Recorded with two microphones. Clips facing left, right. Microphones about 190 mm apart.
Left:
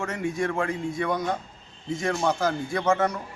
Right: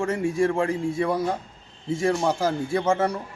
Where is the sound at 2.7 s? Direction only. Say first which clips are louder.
Right 1 dB; 25° right (ahead or behind).